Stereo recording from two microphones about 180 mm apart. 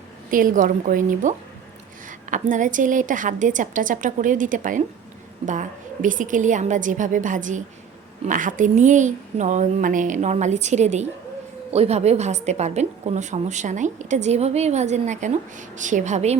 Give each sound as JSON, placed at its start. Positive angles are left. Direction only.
{"t": 0.3, "sound": "a woman's voice", "side_deg": -50}